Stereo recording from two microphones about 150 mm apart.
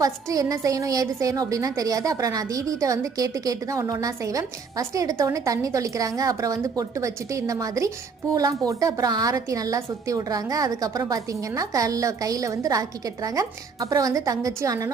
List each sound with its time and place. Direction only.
0.0 s a woman's voice: 25° right (ahead or behind)